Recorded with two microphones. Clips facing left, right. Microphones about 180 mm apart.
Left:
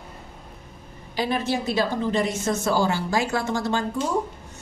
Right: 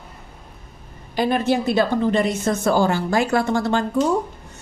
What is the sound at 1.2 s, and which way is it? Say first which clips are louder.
Speech: right 5 dB; 55° right (ahead or behind).